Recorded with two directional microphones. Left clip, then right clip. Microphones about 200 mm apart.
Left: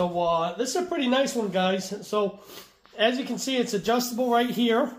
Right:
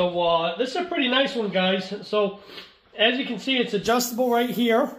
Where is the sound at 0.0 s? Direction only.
30° left (ahead or behind); by 4.8 s centre (ahead or behind).